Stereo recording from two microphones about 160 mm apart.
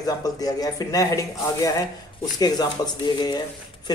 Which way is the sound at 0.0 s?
25° left (ahead or behind).